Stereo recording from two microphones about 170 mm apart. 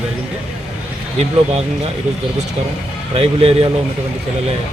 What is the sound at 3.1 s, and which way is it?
Speech, 35° right (ahead or behind).